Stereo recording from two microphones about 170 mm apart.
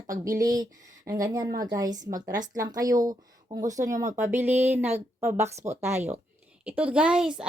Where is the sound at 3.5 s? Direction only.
50° right (ahead or behind).